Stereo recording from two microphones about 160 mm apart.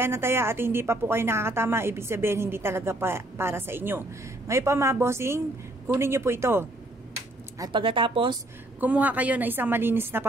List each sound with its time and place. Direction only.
0.0 s a woman's voice: 15° right (ahead or behind)
7.5 s speech: 25° right (ahead or behind)
8.7 s a woman's voice: 10° right (ahead or behind)